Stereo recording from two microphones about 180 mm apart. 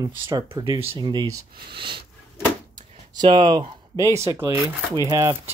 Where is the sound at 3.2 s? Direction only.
30° right (ahead or behind).